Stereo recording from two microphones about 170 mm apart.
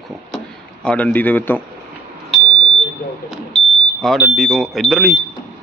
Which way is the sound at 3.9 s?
Centre (ahead or behind).